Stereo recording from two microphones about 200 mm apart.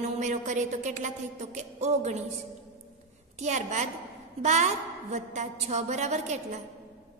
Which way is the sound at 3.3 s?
35° right (ahead or behind).